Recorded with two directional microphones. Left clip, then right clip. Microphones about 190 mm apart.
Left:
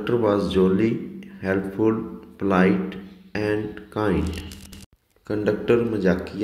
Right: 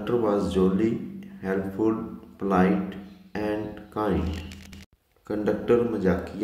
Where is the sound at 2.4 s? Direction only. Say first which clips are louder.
Left 3 dB; 15° left (ahead or behind).